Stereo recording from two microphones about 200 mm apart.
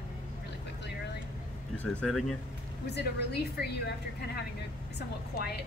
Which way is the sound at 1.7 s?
5° left (ahead or behind).